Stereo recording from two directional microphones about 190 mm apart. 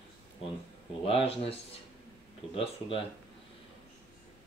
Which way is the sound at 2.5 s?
30° left (ahead or behind).